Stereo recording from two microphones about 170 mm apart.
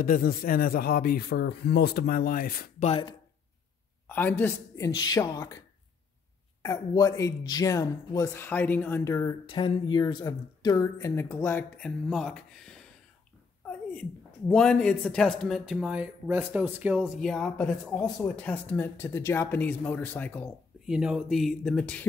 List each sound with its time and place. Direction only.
0.0 s speech: 60° left (ahead or behind)
2.8 s speech: 35° left (ahead or behind)
4.1 s speech: 10° left (ahead or behind)
6.6 s speech: 20° left (ahead or behind)
9.5 s speech: 30° left (ahead or behind); by 12.8 s centre (ahead or behind)
14.5 s speech: 5° left (ahead or behind)
20.8 s speech: 5° right (ahead or behind)